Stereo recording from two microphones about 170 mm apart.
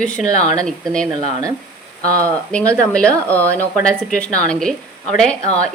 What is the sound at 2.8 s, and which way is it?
A woman's voice, 5° left (ahead or behind).